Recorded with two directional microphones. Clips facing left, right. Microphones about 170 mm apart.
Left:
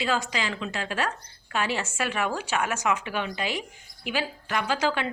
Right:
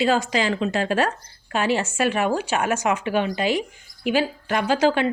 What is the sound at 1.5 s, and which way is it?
A woman's voice, 25° right (ahead or behind).